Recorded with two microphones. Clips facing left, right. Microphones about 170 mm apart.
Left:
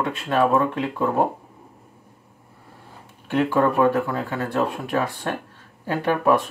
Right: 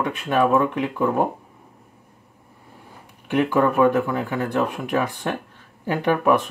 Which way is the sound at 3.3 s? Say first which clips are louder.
Right 1 dB; 20° right (ahead or behind).